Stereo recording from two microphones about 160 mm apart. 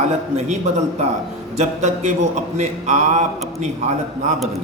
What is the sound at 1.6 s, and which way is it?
A man's voice, 45° right (ahead or behind).